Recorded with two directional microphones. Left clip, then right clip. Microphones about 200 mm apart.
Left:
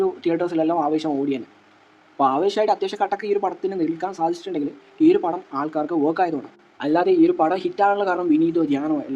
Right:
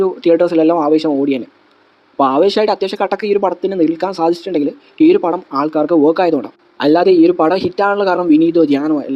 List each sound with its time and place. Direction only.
0.0 s speech: 35° right (ahead or behind)